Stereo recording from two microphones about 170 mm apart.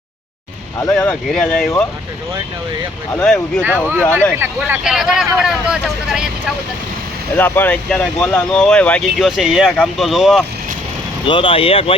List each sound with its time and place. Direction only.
0.8 s speech: 10° left (ahead or behind)
3.1 s speech: 10° left (ahead or behind)
3.6 s speech: 10° right (ahead or behind)
7.3 s speech: 10° left (ahead or behind)
11.3 s speech: 30° left (ahead or behind)